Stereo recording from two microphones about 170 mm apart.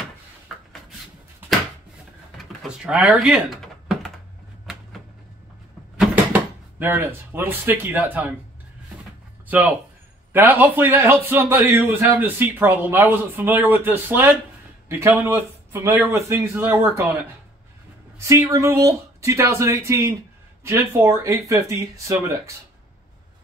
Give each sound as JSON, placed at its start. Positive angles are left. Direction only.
{"t": 2.3, "sound": "typing", "side_deg": -5}
{"t": 6.8, "sound": "a man's voice", "side_deg": -10}
{"t": 9.5, "sound": "a man's voice", "side_deg": -10}